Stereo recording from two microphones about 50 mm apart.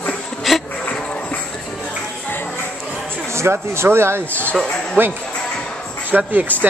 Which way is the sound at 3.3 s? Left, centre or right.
Right.